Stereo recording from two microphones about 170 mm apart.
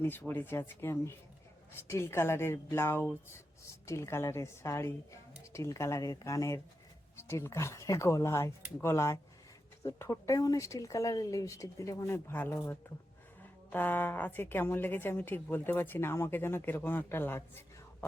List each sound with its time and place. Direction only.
0.0 s a woman's voice: 10° left (ahead or behind)
13.7 s a woman's voice: 10° left (ahead or behind)